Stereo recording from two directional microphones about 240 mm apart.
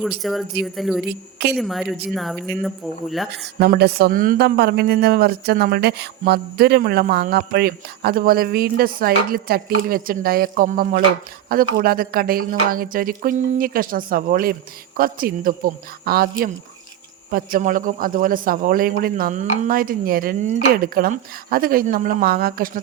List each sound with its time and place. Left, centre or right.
0.2 s speech: centre
3.6 s speech: right